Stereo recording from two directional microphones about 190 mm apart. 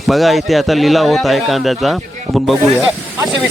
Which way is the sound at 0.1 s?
Centre (ahead or behind).